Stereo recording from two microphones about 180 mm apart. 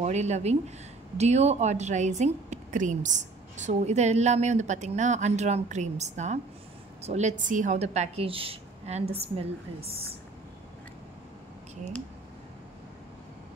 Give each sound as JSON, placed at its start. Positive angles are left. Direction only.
{"t": 0.0, "sound": "a woman's voice", "side_deg": -40}